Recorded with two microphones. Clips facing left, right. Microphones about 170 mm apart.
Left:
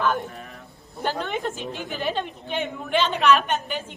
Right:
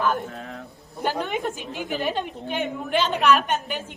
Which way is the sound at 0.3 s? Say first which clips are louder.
Right 4 dB; 85° right.